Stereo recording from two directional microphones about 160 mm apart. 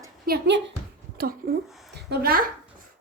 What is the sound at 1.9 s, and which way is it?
Speech, 80° right.